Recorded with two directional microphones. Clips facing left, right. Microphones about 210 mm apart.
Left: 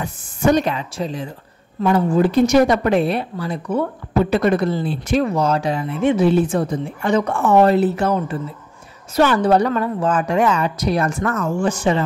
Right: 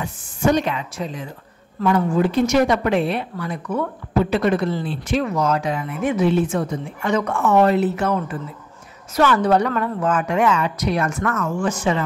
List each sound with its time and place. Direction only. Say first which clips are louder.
0.0 s speech: left 2 dB; 40° left (ahead or behind)
4.2 s speech: left 2 dB; 40° left (ahead or behind)